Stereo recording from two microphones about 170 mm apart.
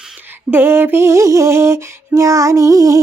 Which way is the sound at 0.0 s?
10° right (ahead or behind).